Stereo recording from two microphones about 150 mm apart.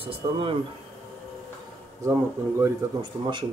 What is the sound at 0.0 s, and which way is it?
Speech, 40° right (ahead or behind).